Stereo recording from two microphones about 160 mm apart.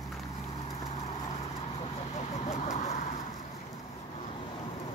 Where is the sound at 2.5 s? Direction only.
45° left (ahead or behind).